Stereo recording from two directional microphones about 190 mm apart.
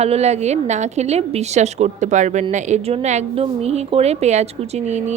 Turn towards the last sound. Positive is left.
turn(degrees=-35)  # may be behind; listen again after turning